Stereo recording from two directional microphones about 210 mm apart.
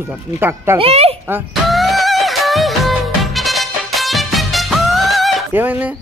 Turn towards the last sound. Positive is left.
turn(degrees=-10)  # may be behind; listen again after turning